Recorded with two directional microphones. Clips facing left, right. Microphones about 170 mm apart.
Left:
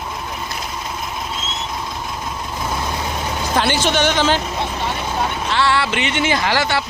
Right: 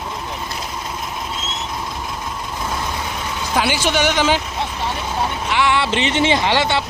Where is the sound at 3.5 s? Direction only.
10° right (ahead or behind).